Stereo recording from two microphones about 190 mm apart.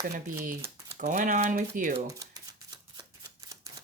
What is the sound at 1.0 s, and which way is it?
Speech, 45° right (ahead or behind).